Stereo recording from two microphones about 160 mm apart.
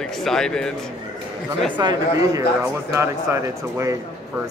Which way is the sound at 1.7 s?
25° right (ahead or behind).